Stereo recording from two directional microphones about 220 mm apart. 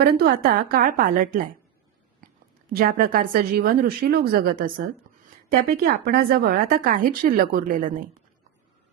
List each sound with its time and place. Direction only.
0.0 s speech: 45° right (ahead or behind)
2.7 s speech: 40° right (ahead or behind)